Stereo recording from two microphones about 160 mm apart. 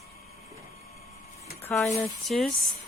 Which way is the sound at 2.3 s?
Centre (ahead or behind).